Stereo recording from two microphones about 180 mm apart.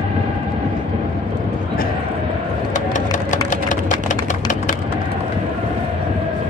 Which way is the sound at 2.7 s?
45° left (ahead or behind).